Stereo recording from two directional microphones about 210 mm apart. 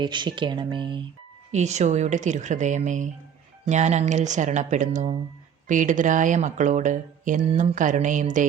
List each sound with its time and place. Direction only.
0.0 s speech: 20° right (ahead or behind)
1.5 s speech: 35° right (ahead or behind)